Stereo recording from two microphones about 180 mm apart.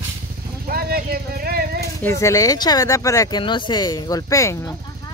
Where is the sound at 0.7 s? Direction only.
55° right (ahead or behind).